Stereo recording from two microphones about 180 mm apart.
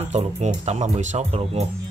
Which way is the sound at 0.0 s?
35° right (ahead or behind).